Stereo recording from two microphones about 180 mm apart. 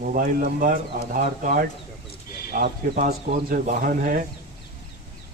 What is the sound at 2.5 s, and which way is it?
Speech, 60° right (ahead or behind).